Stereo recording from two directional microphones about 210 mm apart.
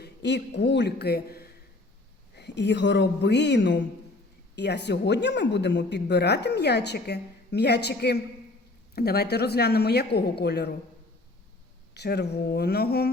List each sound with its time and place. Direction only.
0.0 s a woman's voice: 55° left (ahead or behind)
11.9 s speech: 50° left (ahead or behind)